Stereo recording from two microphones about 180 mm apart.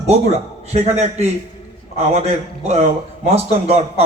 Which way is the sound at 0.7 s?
35° right (ahead or behind).